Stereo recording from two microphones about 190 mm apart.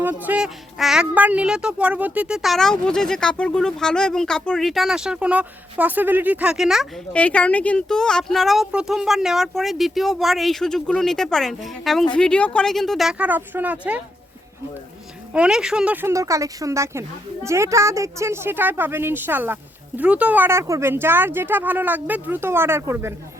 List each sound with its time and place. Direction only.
0.0 s speech: 10° right (ahead or behind)
15.3 s speech: 5° right (ahead or behind)